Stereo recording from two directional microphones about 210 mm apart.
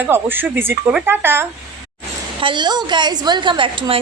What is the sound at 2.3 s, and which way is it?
A woman's voice, 20° right (ahead or behind).